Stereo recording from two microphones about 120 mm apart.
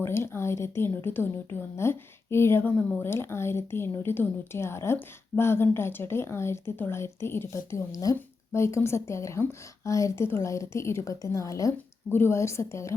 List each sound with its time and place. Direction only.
0.0 s speech: 20° left (ahead or behind)